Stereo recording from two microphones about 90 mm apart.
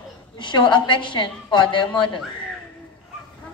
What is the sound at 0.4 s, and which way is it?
A woman's voice, 60° left (ahead or behind).